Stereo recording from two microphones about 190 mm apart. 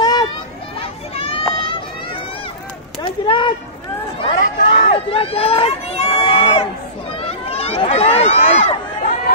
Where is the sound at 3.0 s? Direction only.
25° left (ahead or behind).